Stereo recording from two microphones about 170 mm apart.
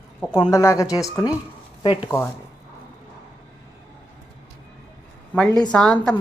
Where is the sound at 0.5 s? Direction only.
15° left (ahead or behind).